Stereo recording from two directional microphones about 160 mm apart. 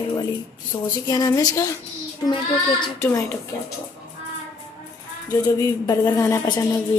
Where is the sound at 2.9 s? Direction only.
15° left (ahead or behind).